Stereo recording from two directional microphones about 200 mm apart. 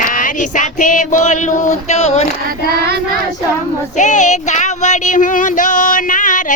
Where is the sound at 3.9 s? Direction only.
40° left (ahead or behind).